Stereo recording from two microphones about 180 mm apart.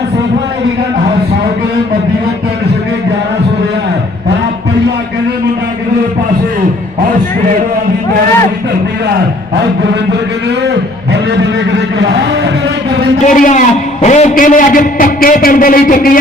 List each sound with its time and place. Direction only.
11.9 s music: 70° right (ahead or behind)
13.3 s a man's voice: 45° left (ahead or behind)